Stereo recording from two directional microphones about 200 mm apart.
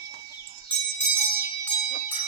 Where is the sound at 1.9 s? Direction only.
45° left (ahead or behind).